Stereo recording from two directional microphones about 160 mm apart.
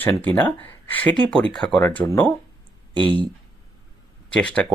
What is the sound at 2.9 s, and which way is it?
Speech, 30° right (ahead or behind).